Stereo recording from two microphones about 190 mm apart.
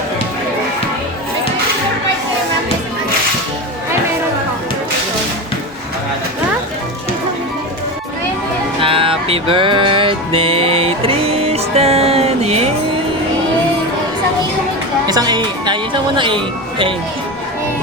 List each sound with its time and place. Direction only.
8.8 s music: 30° right (ahead or behind)
15.0 s speech: 20° right (ahead or behind)